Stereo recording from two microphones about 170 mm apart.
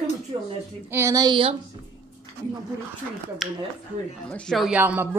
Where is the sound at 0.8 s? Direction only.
15° right (ahead or behind).